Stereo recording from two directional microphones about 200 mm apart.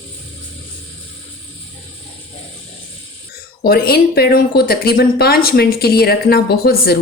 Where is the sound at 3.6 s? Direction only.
50° left (ahead or behind).